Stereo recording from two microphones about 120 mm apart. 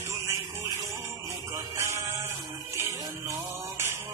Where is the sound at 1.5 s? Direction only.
25° right (ahead or behind).